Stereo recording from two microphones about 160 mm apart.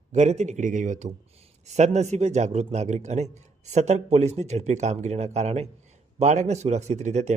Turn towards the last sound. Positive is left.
turn(degrees=-45)  # may be behind; listen again after turning